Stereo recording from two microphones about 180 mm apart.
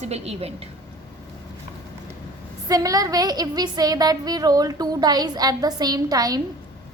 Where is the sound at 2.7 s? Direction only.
20° right (ahead or behind).